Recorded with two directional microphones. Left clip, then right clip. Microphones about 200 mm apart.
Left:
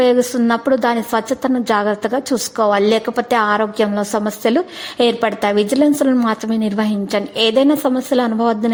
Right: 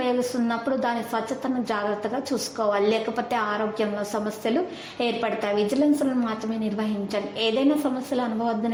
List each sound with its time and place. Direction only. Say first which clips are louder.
0.0 s a woman's voice: left 11 dB; 40° left (ahead or behind)